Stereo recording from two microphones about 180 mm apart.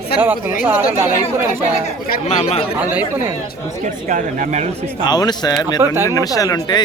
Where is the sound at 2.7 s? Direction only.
10° right (ahead or behind).